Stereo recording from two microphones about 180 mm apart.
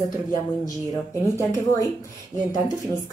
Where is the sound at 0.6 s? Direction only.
15° left (ahead or behind).